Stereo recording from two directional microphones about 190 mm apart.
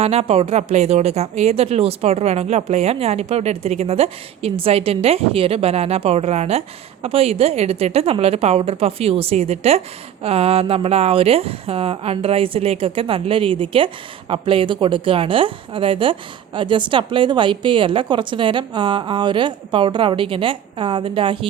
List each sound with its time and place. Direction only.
0.0 s speech: 30° right (ahead or behind)